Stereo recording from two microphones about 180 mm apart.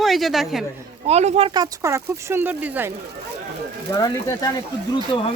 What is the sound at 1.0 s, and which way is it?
Speech, 35° right (ahead or behind).